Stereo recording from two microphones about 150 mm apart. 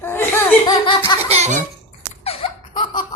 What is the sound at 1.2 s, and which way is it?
Baby laughter, 45° right (ahead or behind).